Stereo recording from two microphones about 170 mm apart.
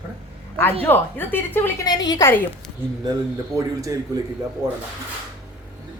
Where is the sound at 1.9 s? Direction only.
25° left (ahead or behind).